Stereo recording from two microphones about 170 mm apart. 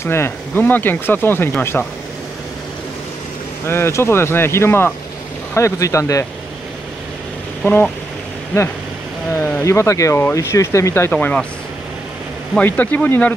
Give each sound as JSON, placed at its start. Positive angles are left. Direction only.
{"t": 0.0, "sound": "speech", "side_deg": 15}
{"t": 3.6, "sound": "speech", "side_deg": 15}
{"t": 7.6, "sound": "speech", "side_deg": 10}
{"t": 9.3, "sound": "speech", "side_deg": 15}
{"t": 12.5, "sound": "speech", "side_deg": 10}